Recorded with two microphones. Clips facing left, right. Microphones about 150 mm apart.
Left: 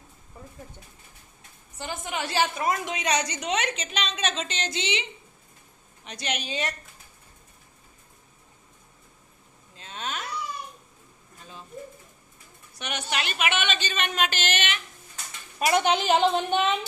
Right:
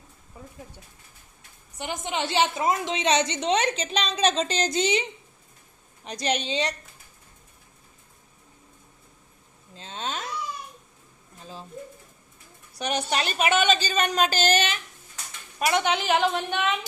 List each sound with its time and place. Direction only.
0.4 s a sound: 5° right (ahead or behind)
1.8 s a woman's voice: 20° right (ahead or behind); by 5.0 s 40° right (ahead or behind)
6.1 s a woman's voice: 35° right (ahead or behind)
9.7 s a sound: 30° right (ahead or behind)
12.8 s a woman's voice: 35° right (ahead or behind)
15.6 s a woman's voice: 30° left (ahead or behind)